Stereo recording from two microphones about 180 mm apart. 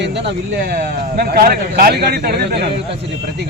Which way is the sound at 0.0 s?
75° right (ahead or behind).